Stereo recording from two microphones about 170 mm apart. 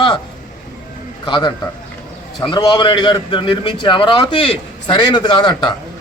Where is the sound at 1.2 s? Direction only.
25° left (ahead or behind).